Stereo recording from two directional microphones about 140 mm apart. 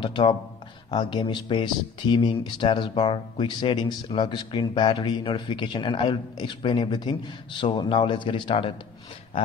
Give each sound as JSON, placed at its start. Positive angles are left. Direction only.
{"t": 0.0, "sound": "speech", "side_deg": 35}